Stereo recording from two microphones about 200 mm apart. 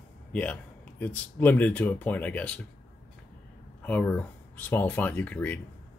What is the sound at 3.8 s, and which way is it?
Speech, 10° left (ahead or behind).